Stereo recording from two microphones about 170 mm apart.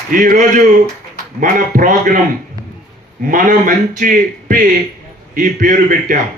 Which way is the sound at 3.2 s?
50° right (ahead or behind).